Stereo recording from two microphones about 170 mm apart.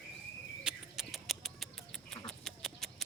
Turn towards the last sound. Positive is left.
turn(degrees=0)  # may be behind; listen again after turning